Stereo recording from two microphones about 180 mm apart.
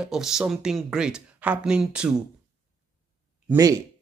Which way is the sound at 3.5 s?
20° right (ahead or behind).